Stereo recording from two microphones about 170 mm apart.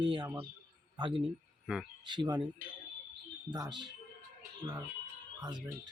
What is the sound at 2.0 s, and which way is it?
Speech, 25° right (ahead or behind).